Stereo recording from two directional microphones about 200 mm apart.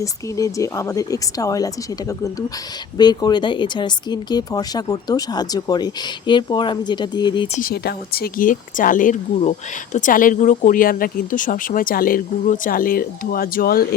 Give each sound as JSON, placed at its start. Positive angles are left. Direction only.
{"t": 0.0, "sound": "speech", "side_deg": 15}
{"t": 7.6, "sound": "speech", "side_deg": 50}